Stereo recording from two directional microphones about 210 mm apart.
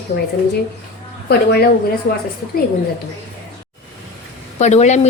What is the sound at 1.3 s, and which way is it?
Speech, 50° left (ahead or behind).